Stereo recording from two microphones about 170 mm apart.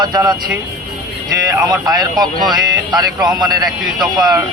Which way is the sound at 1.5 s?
20° right (ahead or behind).